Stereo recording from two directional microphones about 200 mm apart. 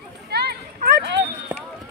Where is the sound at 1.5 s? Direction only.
5° right (ahead or behind).